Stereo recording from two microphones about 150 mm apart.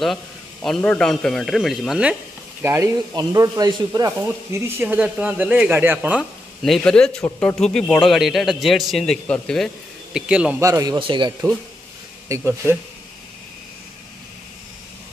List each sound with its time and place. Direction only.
0.0 s a man's voice: centre (ahead or behind)
2.6 s speech: 20° right (ahead or behind)
6.6 s a man's voice: 5° left (ahead or behind)
10.1 s speech: 5° right (ahead or behind)
10.6 s speech: 25° right (ahead or behind)
11.0 s speech: 35° right (ahead or behind)
12.3 s speech: 15° right (ahead or behind)